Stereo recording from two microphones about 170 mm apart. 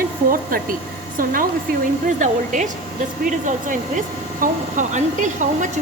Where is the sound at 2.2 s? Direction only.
45° right (ahead or behind).